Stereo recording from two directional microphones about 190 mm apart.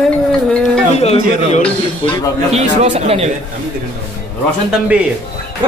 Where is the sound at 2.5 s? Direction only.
35° right (ahead or behind).